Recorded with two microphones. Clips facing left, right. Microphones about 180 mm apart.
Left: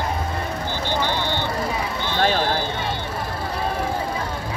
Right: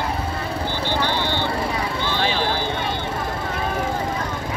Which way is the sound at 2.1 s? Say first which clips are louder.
Left 5 dB; 45° left (ahead or behind).